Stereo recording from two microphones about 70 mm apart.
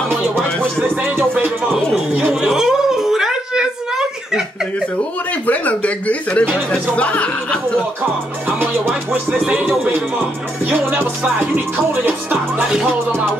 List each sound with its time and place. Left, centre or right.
1.0 s music: right
2.4 s a sound: centre
5.5 s speech: left
8.5 s music: right
9.3 s music: centre
10.7 s music: right
12.6 s music: centre